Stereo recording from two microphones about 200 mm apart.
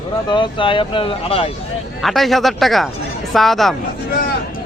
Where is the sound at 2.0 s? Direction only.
Centre (ahead or behind).